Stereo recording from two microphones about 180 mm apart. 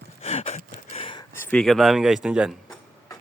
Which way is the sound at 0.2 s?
35° left (ahead or behind).